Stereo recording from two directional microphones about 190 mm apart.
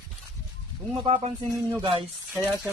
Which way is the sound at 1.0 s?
30° right (ahead or behind).